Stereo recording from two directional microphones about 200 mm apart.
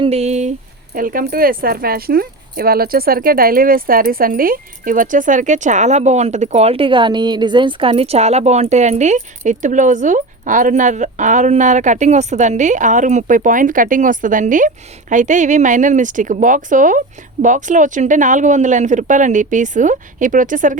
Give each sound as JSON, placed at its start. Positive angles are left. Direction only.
{"t": 0.0, "sound": "speech", "side_deg": -30}